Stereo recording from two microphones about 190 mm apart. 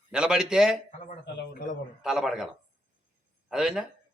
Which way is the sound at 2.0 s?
5° right (ahead or behind).